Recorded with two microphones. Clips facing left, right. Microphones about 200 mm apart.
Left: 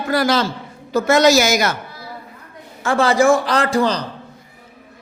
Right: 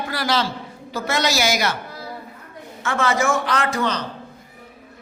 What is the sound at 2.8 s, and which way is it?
A man's voice, 35° left (ahead or behind).